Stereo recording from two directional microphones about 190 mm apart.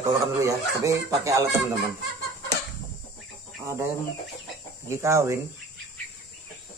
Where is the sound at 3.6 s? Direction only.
15° right (ahead or behind).